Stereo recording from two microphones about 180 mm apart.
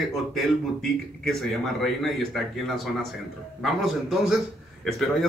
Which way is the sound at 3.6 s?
Centre (ahead or behind).